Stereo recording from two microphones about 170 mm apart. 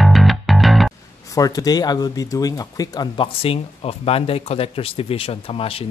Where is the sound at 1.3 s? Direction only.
20° left (ahead or behind).